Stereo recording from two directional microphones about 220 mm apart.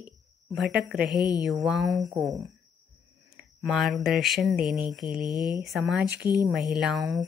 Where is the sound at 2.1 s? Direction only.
15° right (ahead or behind).